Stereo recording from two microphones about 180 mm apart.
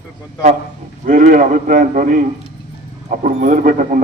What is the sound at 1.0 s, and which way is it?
A man's voice, 50° right (ahead or behind).